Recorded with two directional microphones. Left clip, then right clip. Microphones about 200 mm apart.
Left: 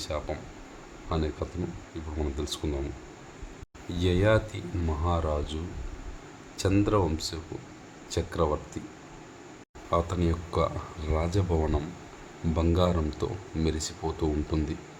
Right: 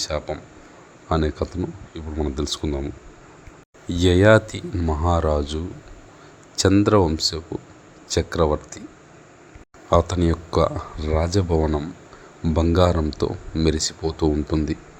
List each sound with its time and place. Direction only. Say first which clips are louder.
0.0 s speech: right 7 dB; 30° right (ahead or behind)
3.8 s speech: right 10 dB; 35° right (ahead or behind)
6.6 s speech: right 9 dB; 20° right (ahead or behind)
9.9 s speech: right 9 dB; 35° right (ahead or behind)